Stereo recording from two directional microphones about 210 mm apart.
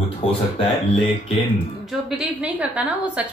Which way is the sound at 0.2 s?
25° left (ahead or behind).